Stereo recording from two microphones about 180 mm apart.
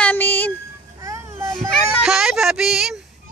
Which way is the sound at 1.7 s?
5° right (ahead or behind).